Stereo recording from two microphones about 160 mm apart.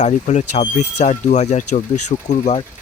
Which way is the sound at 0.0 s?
50° left (ahead or behind).